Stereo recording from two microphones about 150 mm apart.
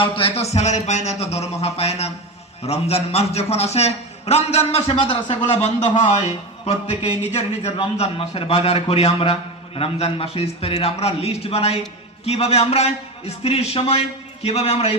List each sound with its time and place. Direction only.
0.0 s a man's voice: 40° left (ahead or behind)
6.7 s a sound: 40° left (ahead or behind)
7.8 s a man's voice: 40° left (ahead or behind)